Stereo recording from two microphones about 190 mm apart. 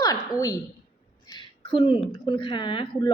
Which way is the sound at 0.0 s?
20° left (ahead or behind).